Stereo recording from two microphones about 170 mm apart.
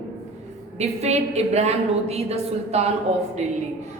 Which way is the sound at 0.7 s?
40° right (ahead or behind).